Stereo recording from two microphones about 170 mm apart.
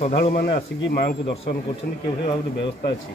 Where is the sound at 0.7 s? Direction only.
80° left.